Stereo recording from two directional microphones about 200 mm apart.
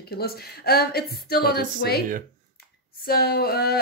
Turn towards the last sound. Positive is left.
turn(degrees=50)  # may be behind; listen again after turning